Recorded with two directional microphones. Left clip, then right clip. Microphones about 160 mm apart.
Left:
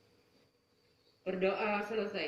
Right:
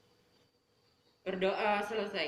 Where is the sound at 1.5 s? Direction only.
45° right (ahead or behind).